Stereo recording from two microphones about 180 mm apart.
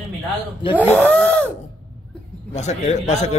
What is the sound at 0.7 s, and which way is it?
Speech, 10° left (ahead or behind).